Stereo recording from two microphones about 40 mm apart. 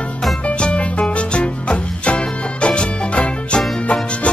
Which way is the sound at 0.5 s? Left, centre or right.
Left.